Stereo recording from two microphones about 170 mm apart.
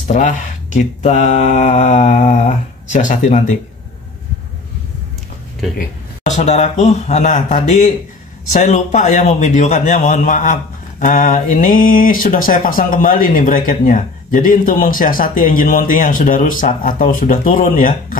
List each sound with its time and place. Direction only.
0.1 s a man's voice: 50° left (ahead or behind)
6.3 s a man's voice: 40° left (ahead or behind)